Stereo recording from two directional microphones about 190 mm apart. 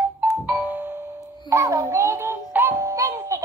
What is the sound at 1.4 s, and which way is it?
Speech, 15° right (ahead or behind).